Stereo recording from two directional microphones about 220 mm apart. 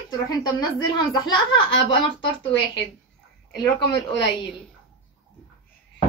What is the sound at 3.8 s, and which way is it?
Speech, 50° left (ahead or behind).